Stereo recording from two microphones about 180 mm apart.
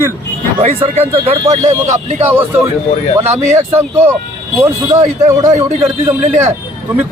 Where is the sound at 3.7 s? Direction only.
15° right (ahead or behind).